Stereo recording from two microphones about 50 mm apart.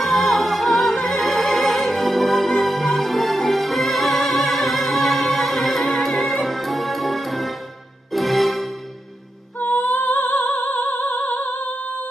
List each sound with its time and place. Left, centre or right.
0.0 s music: centre
9.6 s music: left